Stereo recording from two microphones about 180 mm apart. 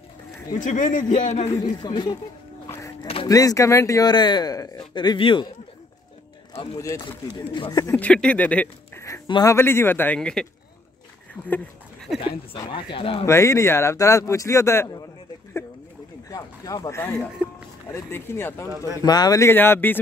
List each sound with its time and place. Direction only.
0.5 s speech: 45° left (ahead or behind)
1.6 s speech: 25° left (ahead or behind)
2.6 s a sound: 20° left (ahead or behind)
3.3 s speech: 20° left (ahead or behind)
6.5 s speech: 35° left (ahead or behind)
6.8 s speech: 15° left (ahead or behind)
7.9 s speech: 5° left (ahead or behind)
9.0 s speech: 20° left (ahead or behind)
12.2 s speech: 30° left (ahead or behind)
13.3 s speech: 15° left (ahead or behind)
16.3 s speech: 20° left (ahead or behind)